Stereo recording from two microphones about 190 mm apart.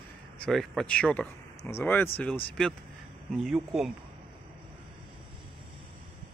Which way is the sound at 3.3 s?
Centre (ahead or behind).